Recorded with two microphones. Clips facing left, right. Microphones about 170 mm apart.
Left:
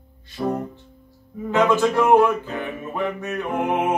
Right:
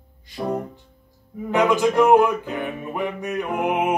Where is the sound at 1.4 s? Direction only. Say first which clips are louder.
Even; 15° right (ahead or behind).